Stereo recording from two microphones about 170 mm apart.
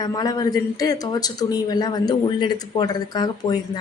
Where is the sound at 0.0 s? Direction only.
20° left (ahead or behind).